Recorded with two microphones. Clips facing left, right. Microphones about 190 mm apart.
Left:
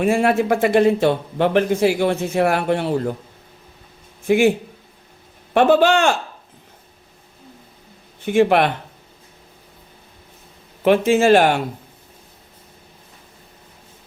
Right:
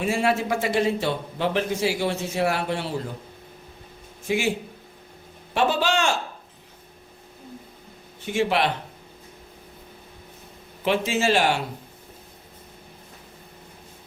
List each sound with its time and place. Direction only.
0.0 s a man's voice: 55° left (ahead or behind)
4.3 s a man's voice: 55° left (ahead or behind)
5.5 s a man's voice: 55° left (ahead or behind)
8.2 s a man's voice: 55° left (ahead or behind)
10.8 s speech: 55° left (ahead or behind)